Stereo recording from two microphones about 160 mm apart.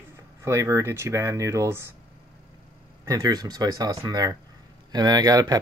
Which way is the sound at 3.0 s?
25° right (ahead or behind).